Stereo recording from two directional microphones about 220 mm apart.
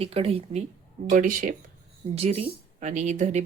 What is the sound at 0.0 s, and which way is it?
Speech, 25° right (ahead or behind).